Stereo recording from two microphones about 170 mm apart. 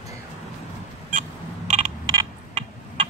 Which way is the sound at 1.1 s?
45° right (ahead or behind).